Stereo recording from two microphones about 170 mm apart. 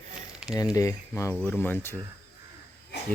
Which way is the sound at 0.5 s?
20° left (ahead or behind).